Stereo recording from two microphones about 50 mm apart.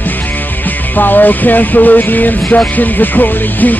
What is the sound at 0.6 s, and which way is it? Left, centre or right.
Music, left.